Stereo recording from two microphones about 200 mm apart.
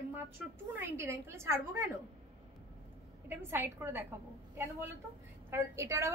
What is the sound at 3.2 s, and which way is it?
Speech, 10° right (ahead or behind).